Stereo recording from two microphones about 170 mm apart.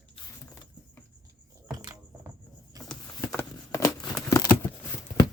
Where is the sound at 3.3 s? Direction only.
20° left (ahead or behind).